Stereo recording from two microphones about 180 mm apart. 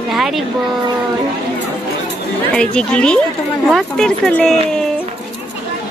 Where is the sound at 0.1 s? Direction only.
Centre (ahead or behind).